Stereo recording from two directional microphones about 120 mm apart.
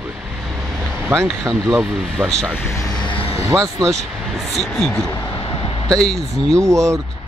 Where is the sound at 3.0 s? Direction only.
50° left (ahead or behind).